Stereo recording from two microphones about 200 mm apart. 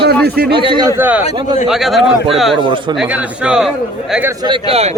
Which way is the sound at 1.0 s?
10° right (ahead or behind).